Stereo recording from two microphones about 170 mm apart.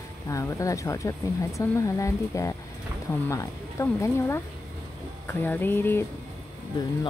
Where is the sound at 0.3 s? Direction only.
20° left (ahead or behind).